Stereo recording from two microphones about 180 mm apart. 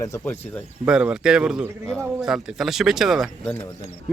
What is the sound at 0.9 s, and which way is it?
Speech, 5° right (ahead or behind).